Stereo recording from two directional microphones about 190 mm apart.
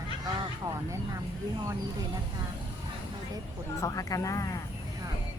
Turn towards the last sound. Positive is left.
turn(degrees=15)  # may be behind; listen again after turning